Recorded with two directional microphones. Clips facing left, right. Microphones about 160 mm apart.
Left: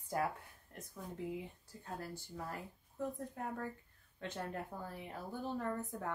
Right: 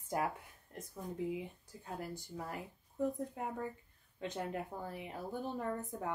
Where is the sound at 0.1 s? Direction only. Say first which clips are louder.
Right 1 dB; 20° right (ahead or behind).